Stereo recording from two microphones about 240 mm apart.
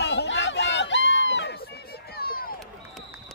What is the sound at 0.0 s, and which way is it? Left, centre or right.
Chatter, left.